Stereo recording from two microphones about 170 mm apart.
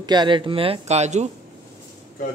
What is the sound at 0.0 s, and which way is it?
Speech, 25° right (ahead or behind).